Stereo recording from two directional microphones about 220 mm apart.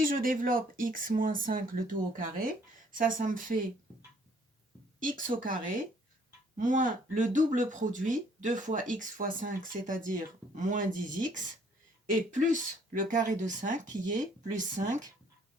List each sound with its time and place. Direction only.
0.0 s speech: 40° right (ahead or behind)
5.2 s speech: 35° right (ahead or behind)